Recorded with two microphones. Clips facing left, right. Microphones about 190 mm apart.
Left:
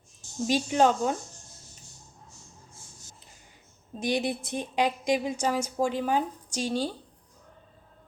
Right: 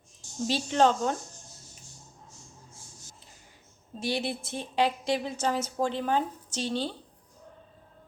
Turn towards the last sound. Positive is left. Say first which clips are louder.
# left 2 dB
turn(degrees=10)  # may be behind; listen again after turning